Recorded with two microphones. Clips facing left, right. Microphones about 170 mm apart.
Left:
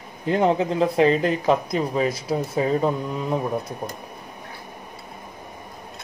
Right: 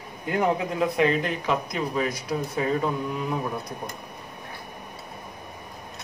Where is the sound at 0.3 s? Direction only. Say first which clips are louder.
Left 4 dB; 25° left (ahead or behind).